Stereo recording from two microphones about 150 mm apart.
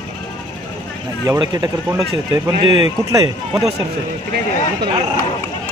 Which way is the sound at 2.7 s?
45° left (ahead or behind).